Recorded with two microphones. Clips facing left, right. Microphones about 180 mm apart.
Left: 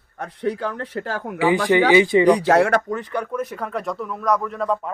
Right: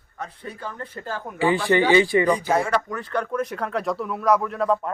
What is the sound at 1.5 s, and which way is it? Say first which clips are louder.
Speech: left 3 dB; 15° left (ahead or behind).